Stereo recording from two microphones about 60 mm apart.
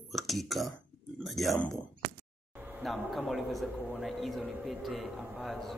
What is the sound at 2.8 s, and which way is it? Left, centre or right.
A man's voice, centre.